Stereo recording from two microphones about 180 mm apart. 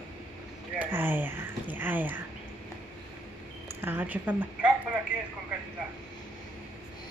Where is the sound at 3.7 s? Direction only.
10° right (ahead or behind).